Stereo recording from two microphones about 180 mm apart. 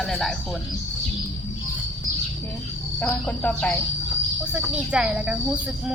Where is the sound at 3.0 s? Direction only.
5° left (ahead or behind).